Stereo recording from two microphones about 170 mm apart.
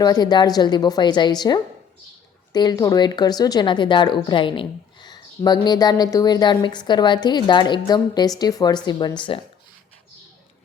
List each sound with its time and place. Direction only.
0.0 s a woman's voice: 25° left (ahead or behind)